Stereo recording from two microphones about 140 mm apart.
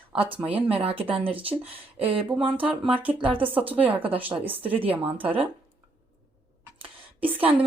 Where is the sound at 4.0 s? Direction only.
40° right (ahead or behind).